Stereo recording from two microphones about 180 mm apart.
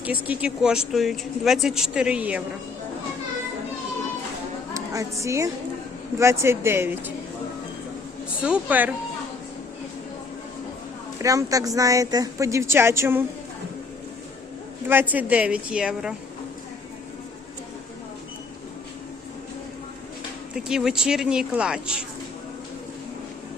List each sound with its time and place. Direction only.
0.0 s speech: 10° right (ahead or behind)
4.7 s a woman's voice: 20° right (ahead or behind)
8.4 s a woman's voice: 5° right (ahead or behind)
11.2 s a woman's voice: 20° right (ahead or behind)
14.8 s a woman's voice: 10° right (ahead or behind)
20.7 s speech: 5° right (ahead or behind)